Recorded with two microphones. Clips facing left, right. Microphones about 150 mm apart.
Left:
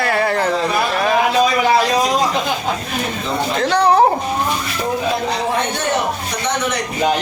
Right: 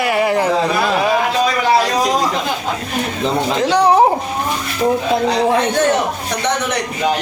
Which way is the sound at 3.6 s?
15° right (ahead or behind).